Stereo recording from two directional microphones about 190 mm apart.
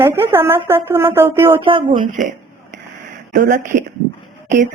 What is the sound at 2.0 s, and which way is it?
Speech, 40° right (ahead or behind).